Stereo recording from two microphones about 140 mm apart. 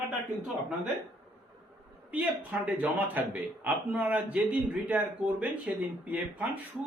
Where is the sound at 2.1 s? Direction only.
10° right (ahead or behind).